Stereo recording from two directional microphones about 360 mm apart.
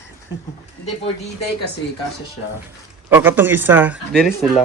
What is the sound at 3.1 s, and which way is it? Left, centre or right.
Speech, centre.